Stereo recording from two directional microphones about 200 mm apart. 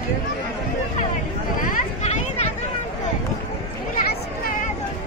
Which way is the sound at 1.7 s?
35° left (ahead or behind).